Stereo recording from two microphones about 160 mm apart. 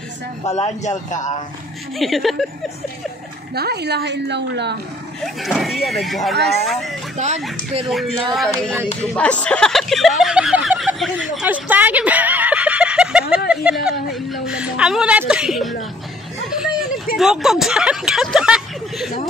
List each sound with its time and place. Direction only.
0.5 s a man's voice: 45° left (ahead or behind)
2.0 s speech: centre (ahead or behind)
3.5 s a woman's voice: 90° right
5.2 s speech: centre (ahead or behind)
7.2 s speech: 45° right (ahead or behind)
7.9 s speech: centre (ahead or behind)
11.3 s a sound: 10° right (ahead or behind)
13.5 s speech: 5° right (ahead or behind)
16.4 s a sound: 5° right (ahead or behind)
17.2 s speech: centre (ahead or behind)